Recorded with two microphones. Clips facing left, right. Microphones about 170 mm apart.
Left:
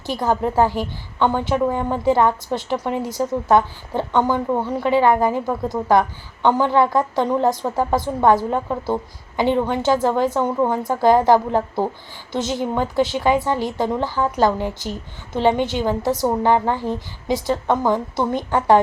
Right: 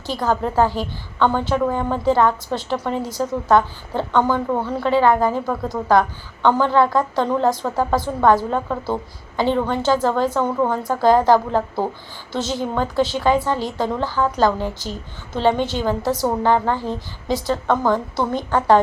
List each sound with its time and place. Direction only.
0.2 s a woman's voice: 20° left (ahead or behind)